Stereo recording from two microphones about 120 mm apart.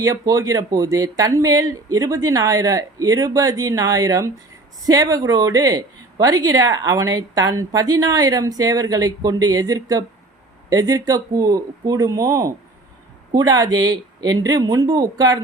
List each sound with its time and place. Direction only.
0.0 s a woman's voice: 25° right (ahead or behind)